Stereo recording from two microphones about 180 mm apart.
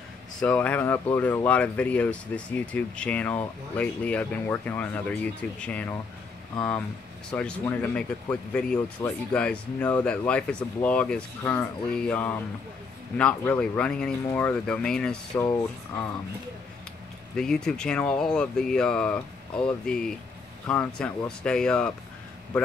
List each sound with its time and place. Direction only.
0.4 s speech: 10° left (ahead or behind)
15.4 s speech: 15° left (ahead or behind)
17.4 s speech: 5° left (ahead or behind)